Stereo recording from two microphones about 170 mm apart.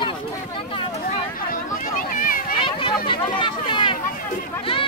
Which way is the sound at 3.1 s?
30° left (ahead or behind).